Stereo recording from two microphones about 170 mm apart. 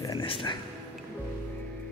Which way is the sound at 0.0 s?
20° left (ahead or behind).